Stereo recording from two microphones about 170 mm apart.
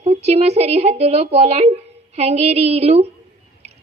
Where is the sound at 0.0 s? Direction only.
40° right (ahead or behind).